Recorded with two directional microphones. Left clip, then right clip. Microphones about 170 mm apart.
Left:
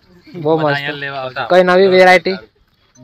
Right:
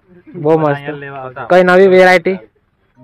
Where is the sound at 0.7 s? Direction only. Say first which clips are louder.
Even; 5° right (ahead or behind).